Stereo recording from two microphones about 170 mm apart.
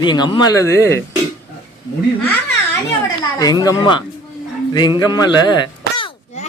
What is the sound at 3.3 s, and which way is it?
Speech, 20° left (ahead or behind).